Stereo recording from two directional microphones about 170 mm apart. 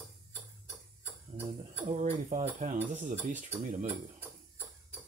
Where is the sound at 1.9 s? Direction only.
45° right (ahead or behind).